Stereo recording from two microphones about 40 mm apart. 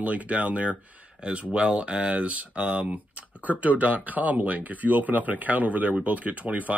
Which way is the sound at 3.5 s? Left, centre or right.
Right.